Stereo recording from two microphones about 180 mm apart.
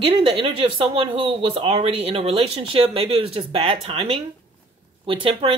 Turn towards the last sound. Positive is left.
turn(degrees=-30)  # may be behind; listen again after turning